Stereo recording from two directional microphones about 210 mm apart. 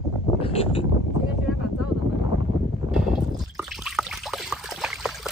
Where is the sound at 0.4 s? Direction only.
25° left (ahead or behind).